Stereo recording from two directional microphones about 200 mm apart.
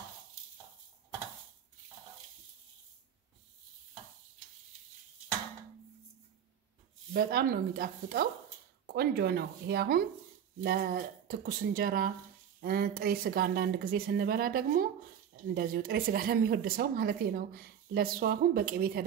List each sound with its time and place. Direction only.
7.2 s a woman's voice: 50° right (ahead or behind)